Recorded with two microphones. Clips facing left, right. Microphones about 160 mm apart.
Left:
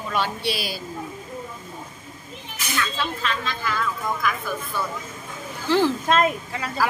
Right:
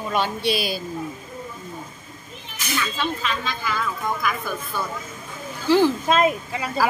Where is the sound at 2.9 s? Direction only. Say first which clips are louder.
Right 1 dB; centre (ahead or behind).